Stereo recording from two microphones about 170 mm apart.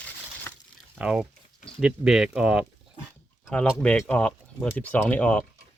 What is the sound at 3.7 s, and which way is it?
Speech, 5° left (ahead or behind).